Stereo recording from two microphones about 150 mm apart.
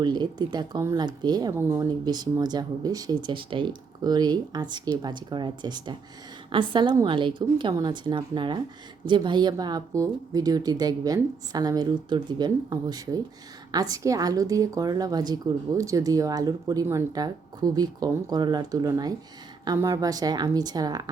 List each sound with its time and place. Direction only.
0.0 s a woman's voice: 30° right (ahead or behind)